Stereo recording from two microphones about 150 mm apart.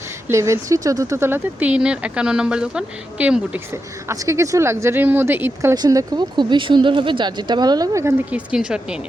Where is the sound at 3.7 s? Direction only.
20° right (ahead or behind).